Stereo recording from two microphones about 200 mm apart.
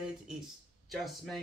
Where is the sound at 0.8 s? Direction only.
Centre (ahead or behind).